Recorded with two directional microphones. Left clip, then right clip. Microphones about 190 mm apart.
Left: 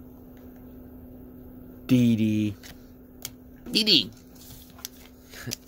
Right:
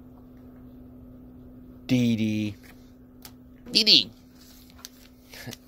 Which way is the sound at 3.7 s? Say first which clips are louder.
Right 2 dB; 20° left (ahead or behind).